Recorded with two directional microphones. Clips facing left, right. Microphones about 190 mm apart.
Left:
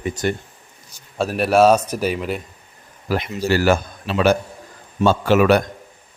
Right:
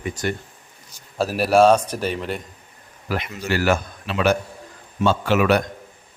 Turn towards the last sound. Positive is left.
turn(degrees=40)  # may be behind; listen again after turning